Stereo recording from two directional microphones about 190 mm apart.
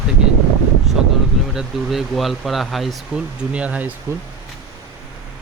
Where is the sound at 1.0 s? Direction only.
5° right (ahead or behind).